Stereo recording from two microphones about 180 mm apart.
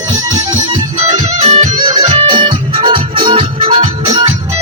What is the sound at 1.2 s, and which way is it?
Music, 40° right (ahead or behind).